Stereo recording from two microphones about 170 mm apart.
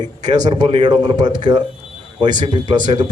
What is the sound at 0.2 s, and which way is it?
Speech, 45° right (ahead or behind).